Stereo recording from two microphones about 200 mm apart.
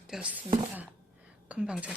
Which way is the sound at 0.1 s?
5° right (ahead or behind).